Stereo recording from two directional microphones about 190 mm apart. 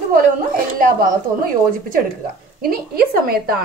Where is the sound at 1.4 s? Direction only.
50° right (ahead or behind).